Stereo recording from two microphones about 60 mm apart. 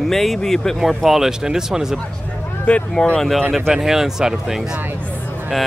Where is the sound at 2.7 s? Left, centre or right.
Centre.